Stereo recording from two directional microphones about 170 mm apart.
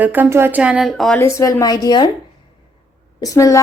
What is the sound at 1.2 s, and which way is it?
Speech, 20° left (ahead or behind).